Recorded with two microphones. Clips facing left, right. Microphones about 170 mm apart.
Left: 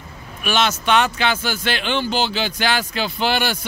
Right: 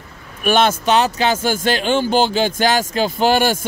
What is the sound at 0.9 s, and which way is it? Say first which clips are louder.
Speech: right 3 dB; 35° right (ahead or behind).